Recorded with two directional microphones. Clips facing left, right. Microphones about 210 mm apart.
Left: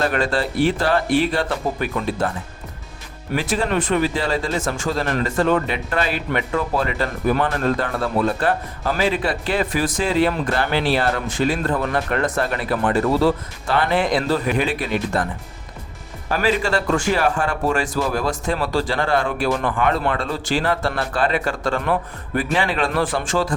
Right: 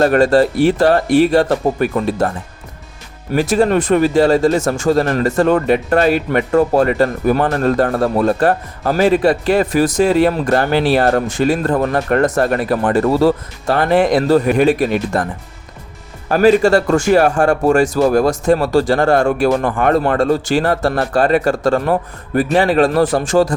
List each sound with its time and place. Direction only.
0.0 s speech: 40° right (ahead or behind)
3.3 s speech: 40° right (ahead or behind)
16.3 s speech: 45° right (ahead or behind)